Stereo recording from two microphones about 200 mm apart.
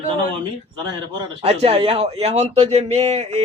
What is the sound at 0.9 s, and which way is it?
A man's voice, 25° right (ahead or behind).